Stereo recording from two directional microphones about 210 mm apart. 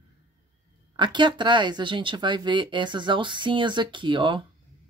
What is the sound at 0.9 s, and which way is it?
Speech, 20° right (ahead or behind).